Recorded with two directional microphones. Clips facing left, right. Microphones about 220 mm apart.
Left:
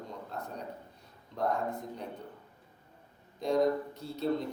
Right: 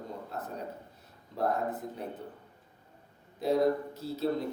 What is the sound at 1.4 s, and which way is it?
Speech, 5° right (ahead or behind).